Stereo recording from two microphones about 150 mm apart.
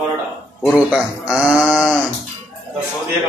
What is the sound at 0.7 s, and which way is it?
A man's voice, 5° right (ahead or behind).